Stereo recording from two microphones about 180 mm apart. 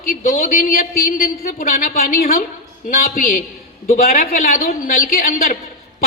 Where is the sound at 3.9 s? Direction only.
40° left (ahead or behind).